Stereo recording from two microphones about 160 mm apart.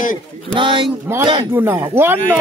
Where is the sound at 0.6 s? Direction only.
30° right (ahead or behind).